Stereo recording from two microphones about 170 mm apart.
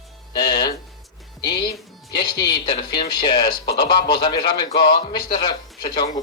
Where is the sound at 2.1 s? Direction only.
25° left (ahead or behind).